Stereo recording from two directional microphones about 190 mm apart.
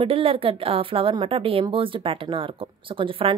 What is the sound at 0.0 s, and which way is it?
A woman's voice, 30° right (ahead or behind).